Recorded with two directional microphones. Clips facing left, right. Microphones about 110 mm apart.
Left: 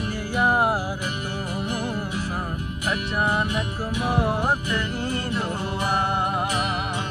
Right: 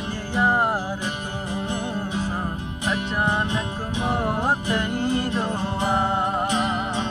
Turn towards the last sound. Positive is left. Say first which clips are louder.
# right 2 dB
turn(degrees=-25)  # may be behind; listen again after turning